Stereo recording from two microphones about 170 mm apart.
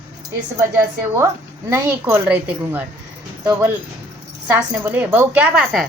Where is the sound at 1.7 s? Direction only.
15° right (ahead or behind).